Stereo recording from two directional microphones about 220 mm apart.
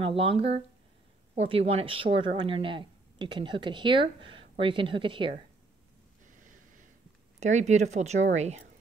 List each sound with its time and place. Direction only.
0.0 s a woman's voice: 25° right (ahead or behind)
6.2 s snort: 35° right (ahead or behind)
7.3 s speech: 30° right (ahead or behind)